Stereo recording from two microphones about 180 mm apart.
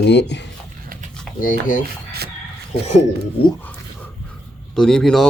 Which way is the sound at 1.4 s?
50° left (ahead or behind).